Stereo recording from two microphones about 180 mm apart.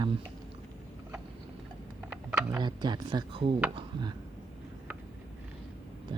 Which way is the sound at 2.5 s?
25° right (ahead or behind).